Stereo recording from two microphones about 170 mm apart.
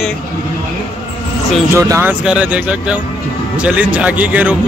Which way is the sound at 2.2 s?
5° right (ahead or behind).